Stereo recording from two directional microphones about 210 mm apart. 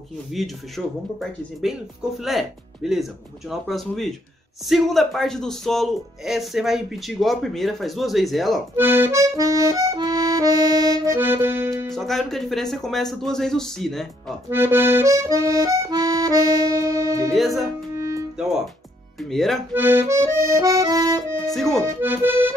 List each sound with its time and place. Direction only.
0.3 s speech: centre (ahead or behind)
2.2 s speech: centre (ahead or behind)
8.7 s accordion: 10° right (ahead or behind)
11.9 s speech: centre (ahead or behind)
14.5 s accordion: 10° right (ahead or behind)
17.3 s speech: centre (ahead or behind)
17.9 s music: 15° right (ahead or behind)
19.3 s speech: centre (ahead or behind)
19.7 s accordion: 10° right (ahead or behind)
21.5 s speech: centre (ahead or behind)
21.8 s accordion: 10° right (ahead or behind)